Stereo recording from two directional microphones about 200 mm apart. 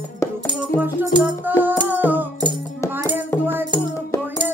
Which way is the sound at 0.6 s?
10° right (ahead or behind).